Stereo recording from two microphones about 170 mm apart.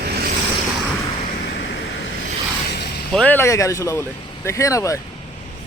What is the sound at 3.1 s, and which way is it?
Speech, 5° left (ahead or behind).